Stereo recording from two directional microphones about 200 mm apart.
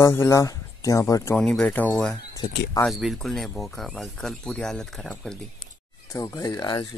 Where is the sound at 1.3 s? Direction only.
Centre (ahead or behind).